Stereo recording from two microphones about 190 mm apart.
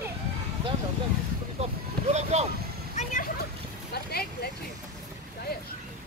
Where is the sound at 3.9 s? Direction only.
55° left (ahead or behind).